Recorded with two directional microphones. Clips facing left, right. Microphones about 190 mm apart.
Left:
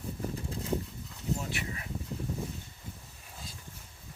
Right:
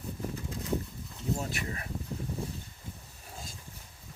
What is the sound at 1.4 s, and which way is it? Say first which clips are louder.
Speech: right 2 dB; 45° right (ahead or behind).